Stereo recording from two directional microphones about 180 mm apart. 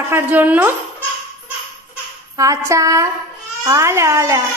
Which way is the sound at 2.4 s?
15° right (ahead or behind).